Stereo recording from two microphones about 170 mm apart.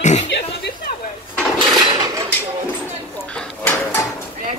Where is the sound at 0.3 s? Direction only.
80° left.